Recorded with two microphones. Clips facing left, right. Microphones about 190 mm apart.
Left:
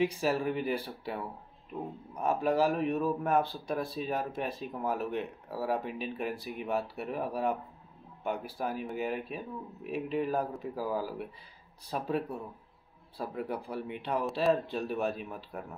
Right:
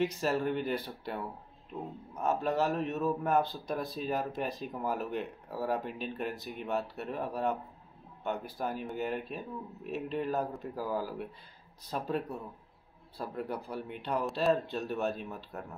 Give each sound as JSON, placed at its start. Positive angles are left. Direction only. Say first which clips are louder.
{"t": 0.0, "sound": "speech", "louder": "left 1 dB", "side_deg": 5}